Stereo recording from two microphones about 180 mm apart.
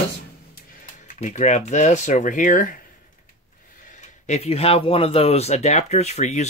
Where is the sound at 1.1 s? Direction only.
40° left (ahead or behind).